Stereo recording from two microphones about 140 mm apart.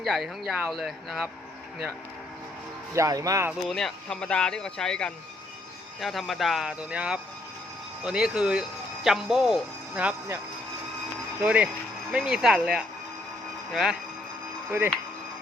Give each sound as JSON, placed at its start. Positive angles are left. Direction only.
{"t": 0.0, "sound": "speech", "side_deg": 0}
{"t": 2.9, "sound": "speech", "side_deg": -25}
{"t": 3.7, "sound": "speech", "side_deg": 5}
{"t": 11.3, "sound": "speech", "side_deg": -10}
{"t": 14.7, "sound": "speech", "side_deg": -15}